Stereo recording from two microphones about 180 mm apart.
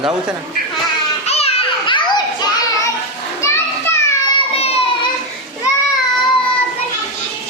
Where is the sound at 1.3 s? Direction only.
35° left (ahead or behind); by 4.0 s 15° left (ahead or behind).